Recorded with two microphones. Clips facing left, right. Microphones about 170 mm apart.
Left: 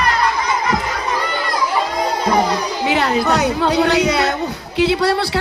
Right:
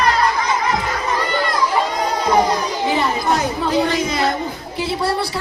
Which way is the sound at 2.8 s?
75° left (ahead or behind).